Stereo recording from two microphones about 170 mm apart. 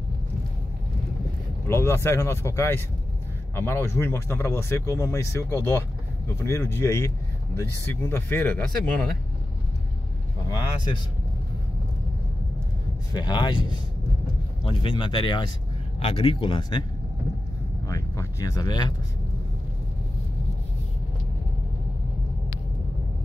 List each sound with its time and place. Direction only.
1.7 s speech: 15° left (ahead or behind)
13.1 s speech: 25° left (ahead or behind)
17.8 s speech: 20° left (ahead or behind)